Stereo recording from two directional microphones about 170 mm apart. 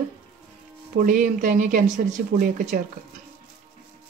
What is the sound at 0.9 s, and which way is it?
Speech, 50° right (ahead or behind).